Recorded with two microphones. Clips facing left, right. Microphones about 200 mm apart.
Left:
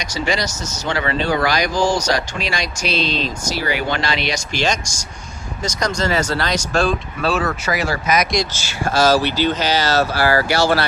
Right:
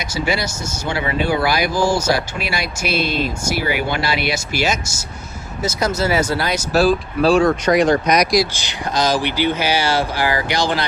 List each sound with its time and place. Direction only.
0.0 s speech: 10° right (ahead or behind)
8.5 s speech: 15° right (ahead or behind)